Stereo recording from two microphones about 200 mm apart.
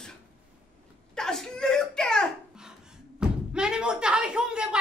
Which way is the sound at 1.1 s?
5° left (ahead or behind).